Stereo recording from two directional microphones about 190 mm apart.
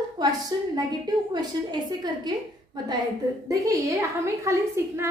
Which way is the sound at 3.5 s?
15° right (ahead or behind).